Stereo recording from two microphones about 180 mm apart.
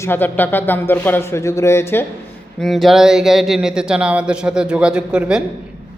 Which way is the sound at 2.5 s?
Centre (ahead or behind).